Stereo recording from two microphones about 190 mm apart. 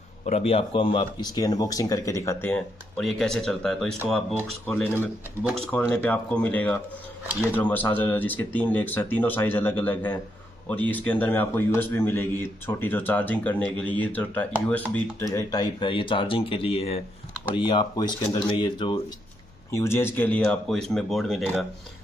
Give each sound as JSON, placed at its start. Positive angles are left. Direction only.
{"t": 0.2, "sound": "a man's voice", "side_deg": 35}
{"t": 19.7, "sound": "speech", "side_deg": 15}